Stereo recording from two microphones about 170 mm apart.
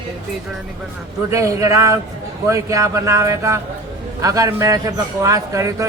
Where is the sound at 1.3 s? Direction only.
15° right (ahead or behind).